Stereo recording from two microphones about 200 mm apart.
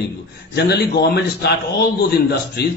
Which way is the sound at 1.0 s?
55° left (ahead or behind).